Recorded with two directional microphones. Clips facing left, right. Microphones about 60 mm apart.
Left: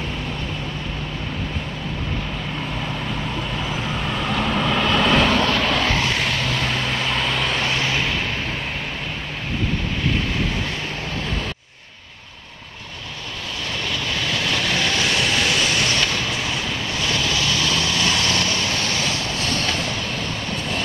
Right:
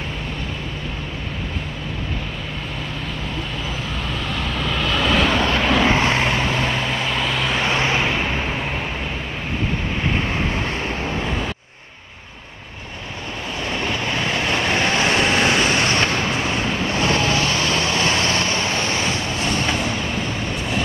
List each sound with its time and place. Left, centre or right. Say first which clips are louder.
4.4 s vehicle: left 4 dB; centre
5.4 s vehicle: right 2 dB; centre
5.9 s vehicle: right 3 dB; right; by 7.5 s centre
7.5 s vehicle: right 3 dB; right
10.0 s vehicle: right 1 dB; right
13.7 s vehicle: right 3 dB; right